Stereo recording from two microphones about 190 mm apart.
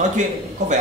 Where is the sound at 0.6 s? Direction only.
40° right (ahead or behind).